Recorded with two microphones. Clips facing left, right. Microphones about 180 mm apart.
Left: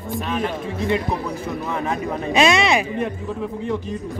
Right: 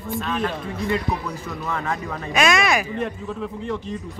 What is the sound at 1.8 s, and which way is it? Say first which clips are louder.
Speech: left 4 dB; 25° left (ahead or behind).